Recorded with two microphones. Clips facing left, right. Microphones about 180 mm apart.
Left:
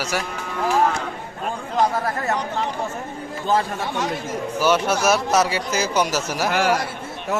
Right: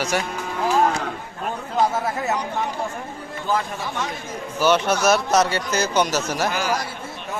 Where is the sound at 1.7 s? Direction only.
5° right (ahead or behind).